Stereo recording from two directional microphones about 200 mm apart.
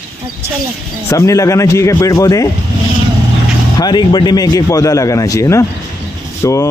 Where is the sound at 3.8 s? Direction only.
20° left (ahead or behind).